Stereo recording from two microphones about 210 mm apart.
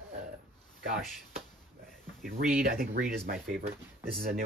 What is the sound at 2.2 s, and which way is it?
Speech, 40° right (ahead or behind).